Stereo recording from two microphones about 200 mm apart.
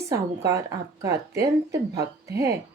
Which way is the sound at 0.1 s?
15° right (ahead or behind).